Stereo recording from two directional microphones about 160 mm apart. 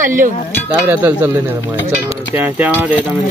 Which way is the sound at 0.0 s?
55° right (ahead or behind).